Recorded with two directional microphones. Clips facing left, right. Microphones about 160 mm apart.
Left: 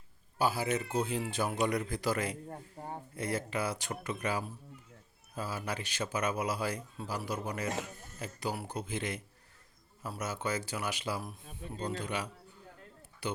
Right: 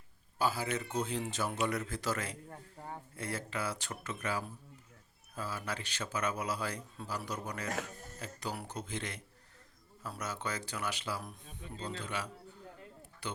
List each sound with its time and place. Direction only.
0.3 s speech: 10° left (ahead or behind)
2.5 s a man's voice: 30° left (ahead or behind)
3.2 s speech: 15° left (ahead or behind)